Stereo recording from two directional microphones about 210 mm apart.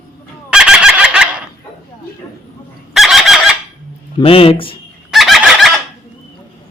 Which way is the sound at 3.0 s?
Centre (ahead or behind).